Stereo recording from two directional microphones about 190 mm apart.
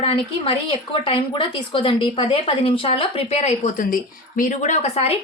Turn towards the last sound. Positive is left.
turn(degrees=35)  # may be behind; listen again after turning